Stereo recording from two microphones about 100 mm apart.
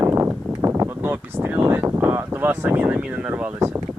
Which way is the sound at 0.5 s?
25° right (ahead or behind).